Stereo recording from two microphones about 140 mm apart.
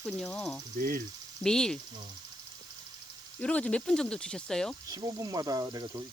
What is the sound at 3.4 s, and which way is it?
Speech, 10° left (ahead or behind).